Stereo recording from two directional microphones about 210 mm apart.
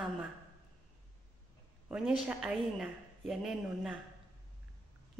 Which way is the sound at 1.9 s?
5° right (ahead or behind).